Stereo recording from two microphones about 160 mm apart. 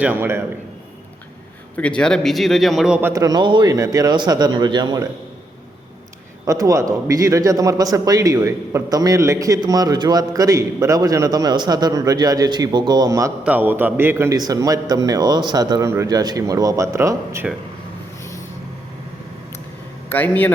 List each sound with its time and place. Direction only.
0.0 s a man's voice: 10° right (ahead or behind)
1.7 s a man's voice: 5° left (ahead or behind)
3.1 s a man's voice: 25° right (ahead or behind)
6.4 s a man's voice: 20° right (ahead or behind)
13.4 s a man's voice: 10° right (ahead or behind)
20.1 s a man's voice: 10° left (ahead or behind)